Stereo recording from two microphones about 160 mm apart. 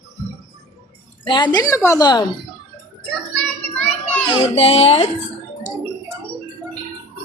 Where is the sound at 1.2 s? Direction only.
30° left (ahead or behind).